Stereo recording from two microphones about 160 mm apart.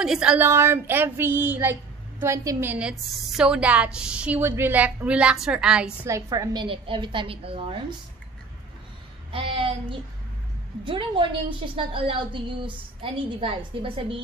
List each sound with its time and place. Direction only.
0.0 s a woman's voice: 5° right (ahead or behind)
0.5 s speech: 15° right (ahead or behind)
6.0 s a woman's voice: 20° right (ahead or behind); by 7.8 s 35° right (ahead or behind)
9.3 s a woman's voice: 35° right (ahead or behind)